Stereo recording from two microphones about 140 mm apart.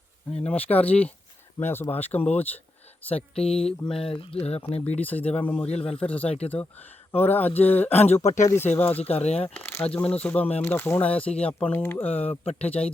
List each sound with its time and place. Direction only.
0.4 s speech: 10° left (ahead or behind)
3.4 s speech: 45° left (ahead or behind)
4.8 s speech: 10° left (ahead or behind)
5.6 s speech: 45° left (ahead or behind)
6.0 s speech: 10° left (ahead or behind)
7.9 s speech: 50° left (ahead or behind)
8.4 s speech: 15° left (ahead or behind)
9.0 s speech: 45° left (ahead or behind)
9.5 s speech: 15° left (ahead or behind)
12.3 s speech: 45° left (ahead or behind)